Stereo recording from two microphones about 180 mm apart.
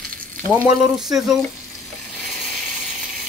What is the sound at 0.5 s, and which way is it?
Speech, 15° right (ahead or behind).